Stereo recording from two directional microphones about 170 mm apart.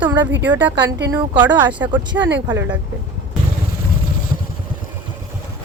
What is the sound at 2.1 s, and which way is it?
Speech, 90° right.